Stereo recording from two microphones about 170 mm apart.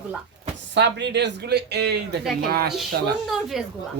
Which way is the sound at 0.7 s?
90° right.